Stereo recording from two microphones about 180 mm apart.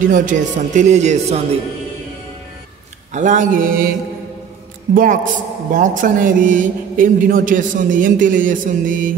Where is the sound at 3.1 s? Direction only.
45° right (ahead or behind).